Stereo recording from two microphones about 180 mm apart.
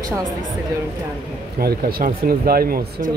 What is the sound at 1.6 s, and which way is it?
Speech, 55° right (ahead or behind).